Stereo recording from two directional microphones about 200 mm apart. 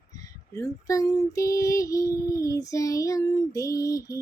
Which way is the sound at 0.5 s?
15° left (ahead or behind).